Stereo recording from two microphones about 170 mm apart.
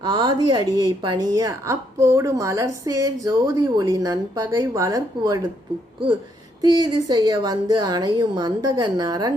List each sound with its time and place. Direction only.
0.0 s a woman's voice: 25° right (ahead or behind)
6.6 s a woman's voice: 25° right (ahead or behind)